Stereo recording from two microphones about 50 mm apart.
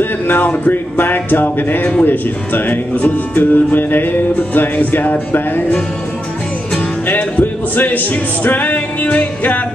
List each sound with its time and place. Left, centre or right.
0.0 s speech: left
7.1 s speech: left